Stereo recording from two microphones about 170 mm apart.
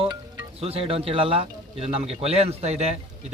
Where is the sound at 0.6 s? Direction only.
35° right (ahead or behind).